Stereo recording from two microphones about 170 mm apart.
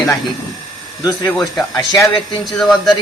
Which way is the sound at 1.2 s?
Centre (ahead or behind).